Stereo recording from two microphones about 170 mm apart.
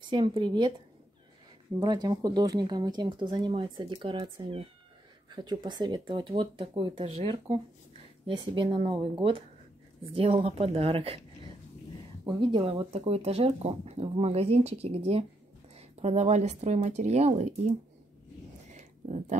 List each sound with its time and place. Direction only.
0.1 s speech: 30° right (ahead or behind)
1.8 s speech: 25° right (ahead or behind)
10.1 s a woman's voice: 35° right (ahead or behind)
18.7 s a sound: 40° right (ahead or behind)